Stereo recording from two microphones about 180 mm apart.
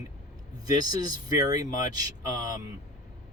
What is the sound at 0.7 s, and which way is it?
Speech, 20° right (ahead or behind).